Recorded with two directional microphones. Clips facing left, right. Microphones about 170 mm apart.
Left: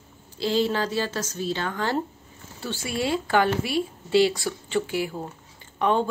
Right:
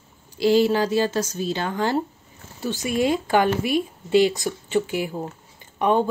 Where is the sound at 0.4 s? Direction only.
10° right (ahead or behind).